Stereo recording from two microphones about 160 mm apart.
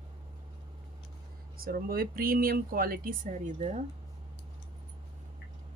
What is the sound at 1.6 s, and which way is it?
Speech, 65° right (ahead or behind).